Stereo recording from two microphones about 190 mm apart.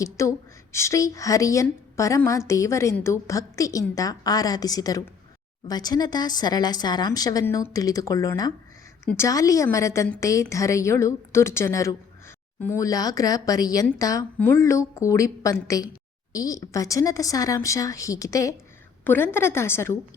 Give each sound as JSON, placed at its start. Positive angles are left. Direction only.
{"t": 0.0, "sound": "a woman's voice", "side_deg": 15}